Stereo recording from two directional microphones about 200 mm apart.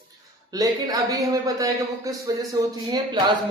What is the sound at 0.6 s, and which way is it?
A man's voice, 15° right (ahead or behind).